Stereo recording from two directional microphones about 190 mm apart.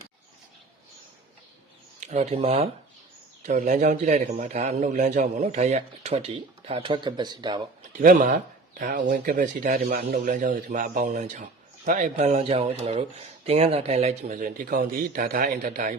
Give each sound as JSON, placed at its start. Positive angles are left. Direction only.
{"t": 2.0, "sound": "a man's voice", "side_deg": -40}
{"t": 8.0, "sound": "a man's voice", "side_deg": -45}